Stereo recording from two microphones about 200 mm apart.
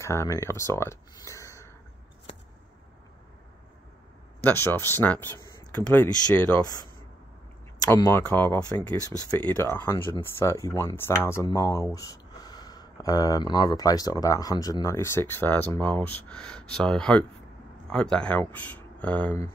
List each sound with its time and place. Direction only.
0.0 s speech: 15° left (ahead or behind)
4.4 s speech: 10° left (ahead or behind)
8.1 s speech: 10° left (ahead or behind)